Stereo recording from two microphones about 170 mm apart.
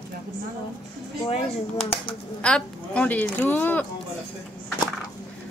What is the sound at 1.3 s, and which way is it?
Speech, 35° left (ahead or behind).